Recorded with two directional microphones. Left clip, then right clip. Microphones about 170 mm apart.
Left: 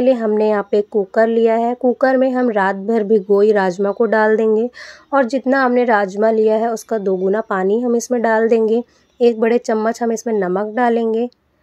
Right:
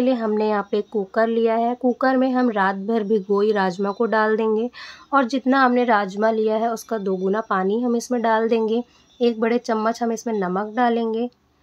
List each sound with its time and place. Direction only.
0.0 s a woman's voice: 20° left (ahead or behind)